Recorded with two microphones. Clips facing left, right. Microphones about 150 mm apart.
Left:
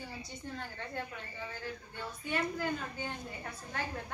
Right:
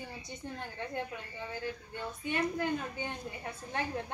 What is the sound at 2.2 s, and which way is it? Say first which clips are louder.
Speech: right 2 dB; 20° right (ahead or behind).